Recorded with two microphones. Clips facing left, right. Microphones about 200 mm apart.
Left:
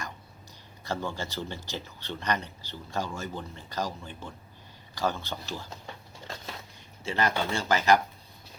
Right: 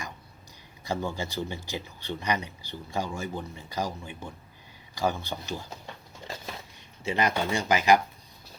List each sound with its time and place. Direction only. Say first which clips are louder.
0.9 s speech: right 2 dB; 15° right (ahead or behind)
6.2 s a sound: right 2 dB; 5° right (ahead or behind)
7.0 s speech: right 1 dB; 15° right (ahead or behind)